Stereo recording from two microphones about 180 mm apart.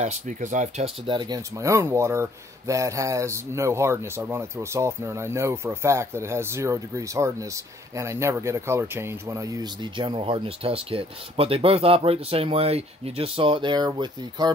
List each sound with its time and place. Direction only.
0.0 s speech: 40° right (ahead or behind); by 14.5 s 25° right (ahead or behind)